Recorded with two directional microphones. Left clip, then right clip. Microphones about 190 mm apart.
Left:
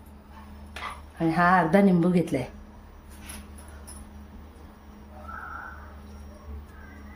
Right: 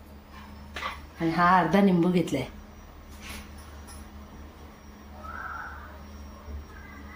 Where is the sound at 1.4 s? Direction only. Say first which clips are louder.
Left 1 dB; 30° left (ahead or behind).